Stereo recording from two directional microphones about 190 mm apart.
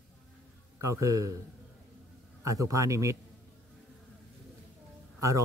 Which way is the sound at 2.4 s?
15° right (ahead or behind).